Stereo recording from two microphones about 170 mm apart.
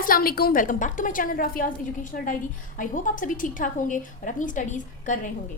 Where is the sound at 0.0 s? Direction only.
60° left (ahead or behind).